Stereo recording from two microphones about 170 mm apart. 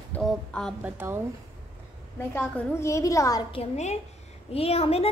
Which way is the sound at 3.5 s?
40° left (ahead or behind).